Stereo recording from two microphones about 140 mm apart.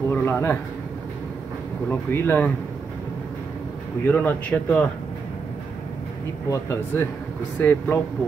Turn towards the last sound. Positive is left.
turn(degrees=15)  # may be behind; listen again after turning